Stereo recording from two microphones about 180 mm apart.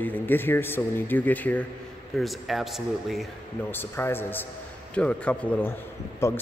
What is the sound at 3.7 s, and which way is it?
A man's voice, 10° left (ahead or behind).